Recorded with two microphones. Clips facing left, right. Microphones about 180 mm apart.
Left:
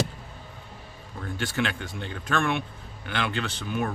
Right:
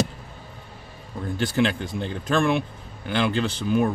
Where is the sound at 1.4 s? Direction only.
35° right (ahead or behind).